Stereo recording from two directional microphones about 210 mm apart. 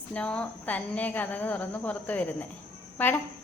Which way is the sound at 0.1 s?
5° left (ahead or behind).